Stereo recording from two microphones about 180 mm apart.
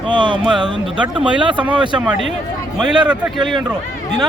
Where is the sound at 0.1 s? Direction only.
25° right (ahead or behind).